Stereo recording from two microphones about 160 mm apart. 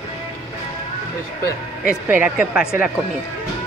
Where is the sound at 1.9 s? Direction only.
10° right (ahead or behind).